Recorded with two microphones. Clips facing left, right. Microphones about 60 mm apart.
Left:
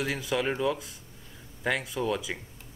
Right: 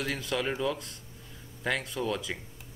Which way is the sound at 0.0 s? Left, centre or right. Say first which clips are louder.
Left 2 dB; centre.